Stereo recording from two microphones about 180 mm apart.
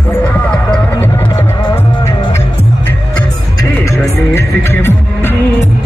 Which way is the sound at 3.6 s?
15° left (ahead or behind).